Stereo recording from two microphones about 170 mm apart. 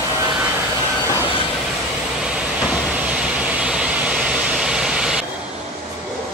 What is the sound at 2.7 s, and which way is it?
Vehicle, 5° right (ahead or behind).